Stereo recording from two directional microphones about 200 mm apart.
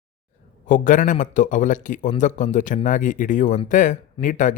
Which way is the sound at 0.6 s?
40° left (ahead or behind).